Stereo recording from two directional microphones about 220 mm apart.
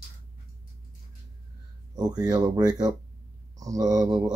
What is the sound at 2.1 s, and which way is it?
Speech, 20° right (ahead or behind).